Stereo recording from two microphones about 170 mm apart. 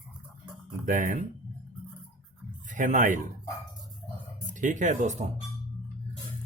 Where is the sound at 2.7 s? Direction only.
50° right (ahead or behind).